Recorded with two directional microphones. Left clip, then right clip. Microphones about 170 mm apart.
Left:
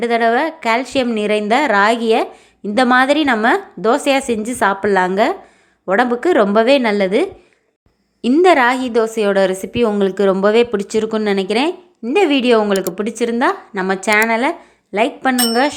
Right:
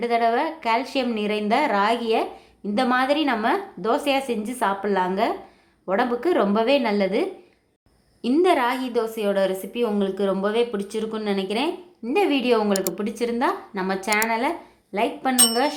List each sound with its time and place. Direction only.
0.0 s a woman's voice: 25° left (ahead or behind)